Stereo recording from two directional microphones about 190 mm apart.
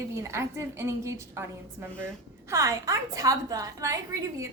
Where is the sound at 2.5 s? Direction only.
15° right (ahead or behind).